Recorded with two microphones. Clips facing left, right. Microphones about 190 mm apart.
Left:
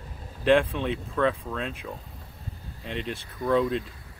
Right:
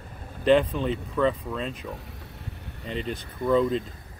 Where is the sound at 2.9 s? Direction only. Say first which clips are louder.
Right 2 dB; centre (ahead or behind).